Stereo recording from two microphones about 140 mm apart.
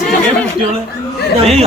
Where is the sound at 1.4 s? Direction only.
50° right (ahead or behind).